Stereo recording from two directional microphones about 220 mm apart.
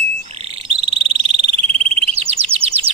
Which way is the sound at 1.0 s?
25° right (ahead or behind).